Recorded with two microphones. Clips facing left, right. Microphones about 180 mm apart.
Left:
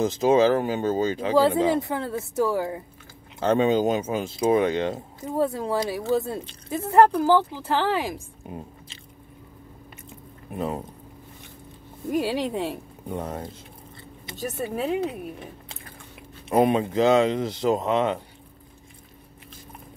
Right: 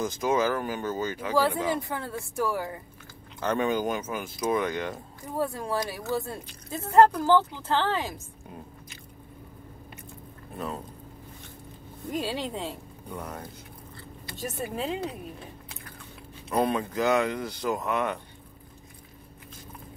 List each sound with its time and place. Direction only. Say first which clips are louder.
0.0 s speech: left 7 dB; 25° left (ahead or behind)
10.5 s speech: left 6 dB; 20° left (ahead or behind)
12.1 s speech: left 6 dB; 15° left (ahead or behind)
13.1 s speech: left 6 dB; 25° left (ahead or behind)
14.8 s speech: left 7 dB; 15° left (ahead or behind)